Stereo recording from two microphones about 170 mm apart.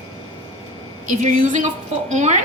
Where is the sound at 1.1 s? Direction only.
50° right (ahead or behind).